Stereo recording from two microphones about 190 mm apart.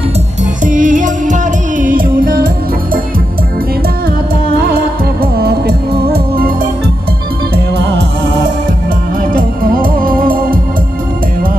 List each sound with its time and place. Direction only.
0.7 s music: 45° right (ahead or behind)
4.6 s music: 55° right (ahead or behind)
7.5 s music: 60° right (ahead or behind)
9.3 s music: 50° right (ahead or behind)